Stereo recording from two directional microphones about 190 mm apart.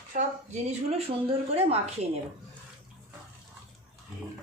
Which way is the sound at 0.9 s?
30° right (ahead or behind).